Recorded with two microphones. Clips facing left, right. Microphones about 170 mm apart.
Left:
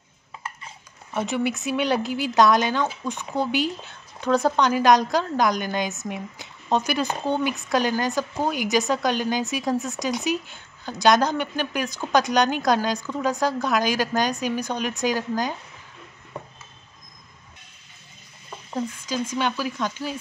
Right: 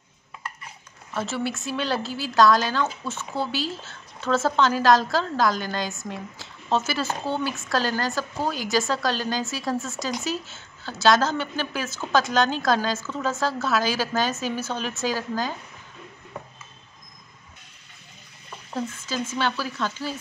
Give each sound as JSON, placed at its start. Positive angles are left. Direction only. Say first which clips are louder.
{"t": 1.1, "sound": "a woman's voice", "louder": "left 3 dB", "side_deg": 15}
{"t": 18.7, "sound": "a woman's voice", "louder": "left 2 dB", "side_deg": 10}